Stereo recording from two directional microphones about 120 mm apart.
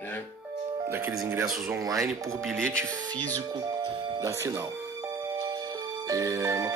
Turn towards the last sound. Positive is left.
turn(degrees=-25)  # may be behind; listen again after turning